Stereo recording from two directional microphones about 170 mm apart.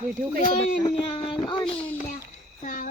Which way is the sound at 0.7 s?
35° left (ahead or behind).